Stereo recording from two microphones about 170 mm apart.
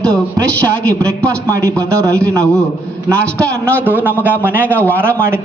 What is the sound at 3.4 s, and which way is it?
A man's voice, 15° right (ahead or behind).